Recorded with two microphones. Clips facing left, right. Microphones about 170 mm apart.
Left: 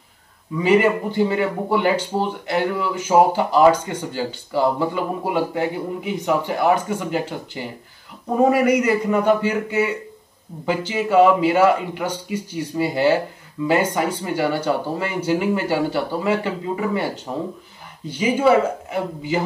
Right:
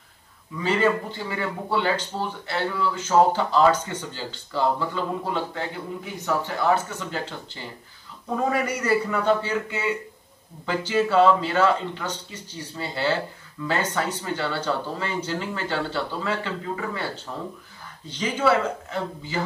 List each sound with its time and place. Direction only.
0.6 s speech: 15° left (ahead or behind)
10.9 s speech: 15° left (ahead or behind)